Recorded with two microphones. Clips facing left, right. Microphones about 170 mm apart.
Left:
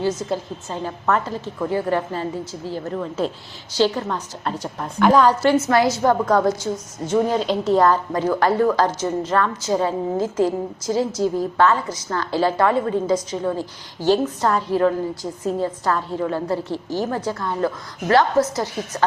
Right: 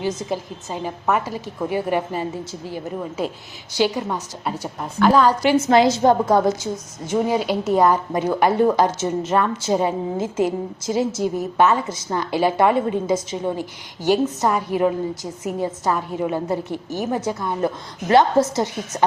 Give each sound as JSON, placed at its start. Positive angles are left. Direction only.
{"t": 0.0, "sound": "a woman's voice", "side_deg": -15}
{"t": 5.6, "sound": "a woman's voice", "side_deg": -20}
{"t": 7.1, "sound": "a woman's voice", "side_deg": -10}